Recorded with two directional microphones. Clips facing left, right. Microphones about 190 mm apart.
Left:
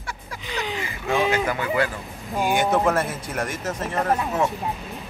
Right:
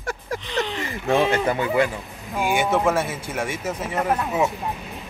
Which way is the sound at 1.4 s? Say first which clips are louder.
Right 3 dB; 25° right (ahead or behind).